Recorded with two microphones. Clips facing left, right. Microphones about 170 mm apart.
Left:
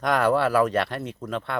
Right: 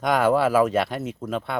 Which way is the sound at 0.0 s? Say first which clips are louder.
Right 2 dB; 5° right (ahead or behind).